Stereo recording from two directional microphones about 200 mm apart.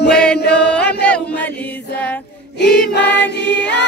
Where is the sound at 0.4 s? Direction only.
55° left (ahead or behind).